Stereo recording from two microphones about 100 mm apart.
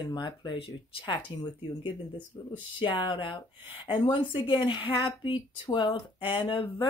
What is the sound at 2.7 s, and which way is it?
Speech, 60° left (ahead or behind).